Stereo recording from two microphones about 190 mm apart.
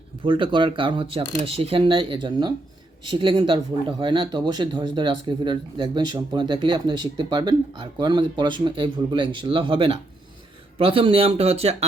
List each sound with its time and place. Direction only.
0.3 s speech: 25° right (ahead or behind)